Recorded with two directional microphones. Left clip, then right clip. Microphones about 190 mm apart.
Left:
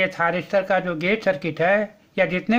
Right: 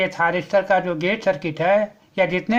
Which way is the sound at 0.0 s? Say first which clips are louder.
Right 1 dB; 20° left (ahead or behind).